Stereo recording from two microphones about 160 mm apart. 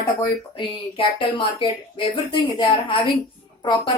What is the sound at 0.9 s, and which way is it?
A woman's voice, 35° left (ahead or behind).